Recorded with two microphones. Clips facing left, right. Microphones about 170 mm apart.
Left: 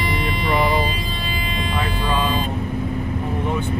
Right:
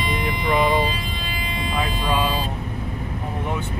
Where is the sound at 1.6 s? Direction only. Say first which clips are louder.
Even; 10° right (ahead or behind).